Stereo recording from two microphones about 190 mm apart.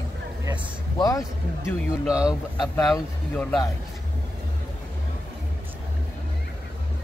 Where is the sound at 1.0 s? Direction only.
20° left (ahead or behind).